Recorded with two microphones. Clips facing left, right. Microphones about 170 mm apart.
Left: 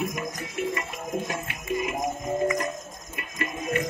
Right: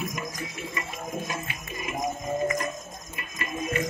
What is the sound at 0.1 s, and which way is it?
Music, 60° left (ahead or behind).